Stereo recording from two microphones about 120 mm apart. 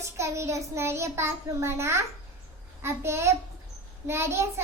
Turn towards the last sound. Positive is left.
turn(degrees=-20)  # may be behind; listen again after turning